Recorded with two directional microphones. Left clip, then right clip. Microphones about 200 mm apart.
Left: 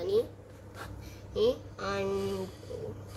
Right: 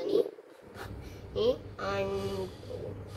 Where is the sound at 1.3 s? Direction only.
10° left (ahead or behind).